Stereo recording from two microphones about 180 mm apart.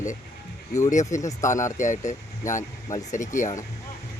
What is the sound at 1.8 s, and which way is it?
Speech, 45° left (ahead or behind).